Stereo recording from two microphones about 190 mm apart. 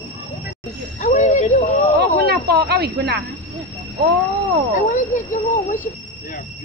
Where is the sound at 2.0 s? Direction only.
60° right (ahead or behind).